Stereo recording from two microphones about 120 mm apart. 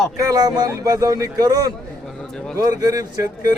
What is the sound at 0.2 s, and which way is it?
A man's voice, 30° right (ahead or behind).